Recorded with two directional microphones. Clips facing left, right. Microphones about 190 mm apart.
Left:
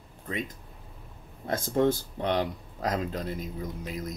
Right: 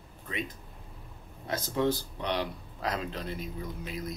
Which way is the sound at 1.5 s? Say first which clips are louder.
Left 4 dB; 50° left (ahead or behind).